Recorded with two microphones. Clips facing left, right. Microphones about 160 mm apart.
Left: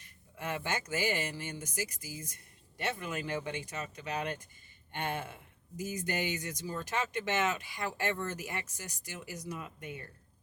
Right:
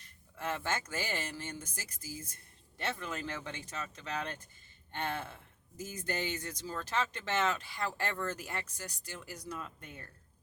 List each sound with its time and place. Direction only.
0.3 s speech: 15° left (ahead or behind)